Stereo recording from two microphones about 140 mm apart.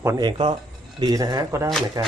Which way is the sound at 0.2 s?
35° right (ahead or behind).